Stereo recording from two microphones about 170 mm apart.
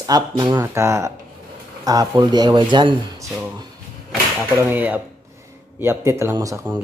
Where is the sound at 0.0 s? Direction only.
25° right (ahead or behind).